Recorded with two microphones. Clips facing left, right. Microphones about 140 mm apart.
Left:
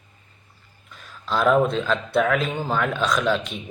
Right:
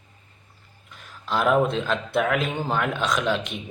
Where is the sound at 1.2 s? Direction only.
15° right (ahead or behind).